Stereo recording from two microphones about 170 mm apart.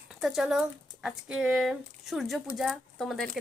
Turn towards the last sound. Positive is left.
turn(degrees=0)  # may be behind; listen again after turning